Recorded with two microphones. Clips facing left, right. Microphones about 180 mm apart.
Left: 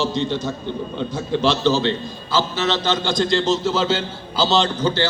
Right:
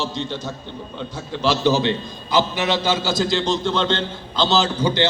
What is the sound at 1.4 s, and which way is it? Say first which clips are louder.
A man's voice: even; 10° right (ahead or behind).